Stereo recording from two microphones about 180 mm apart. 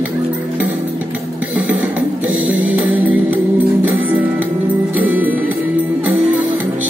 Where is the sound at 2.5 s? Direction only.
10° right (ahead or behind).